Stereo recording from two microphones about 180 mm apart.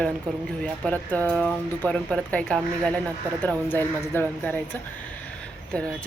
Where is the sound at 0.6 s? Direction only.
5° left (ahead or behind).